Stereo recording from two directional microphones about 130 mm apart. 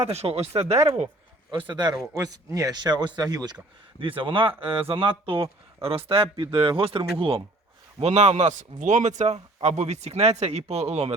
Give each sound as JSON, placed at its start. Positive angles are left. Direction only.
{"t": 0.1, "sound": "speech", "side_deg": -50}
{"t": 0.7, "sound": "speech", "side_deg": -20}
{"t": 1.7, "sound": "speech", "side_deg": -30}
{"t": 4.0, "sound": "speech", "side_deg": -40}